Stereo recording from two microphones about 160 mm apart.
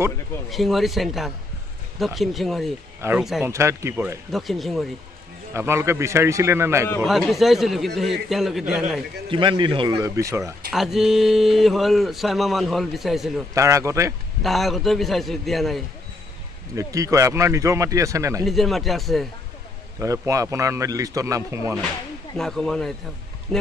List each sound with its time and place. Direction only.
0.5 s speech: centre (ahead or behind)
3.0 s a man's voice: 15° right (ahead or behind)
4.3 s speech: centre (ahead or behind)
5.5 s a man's voice: 15° right (ahead or behind)
7.1 s speech: centre (ahead or behind)
9.3 s speech: 30° right (ahead or behind)
9.9 s speech: 20° right (ahead or behind)
10.7 s speech: centre (ahead or behind)
13.6 s speech: 20° right (ahead or behind)
14.4 s speech: centre (ahead or behind)
16.7 s speech: 20° right (ahead or behind)
18.4 s speech: centre (ahead or behind)
20.0 s speech: 20° right (ahead or behind)
22.4 s speech: centre (ahead or behind)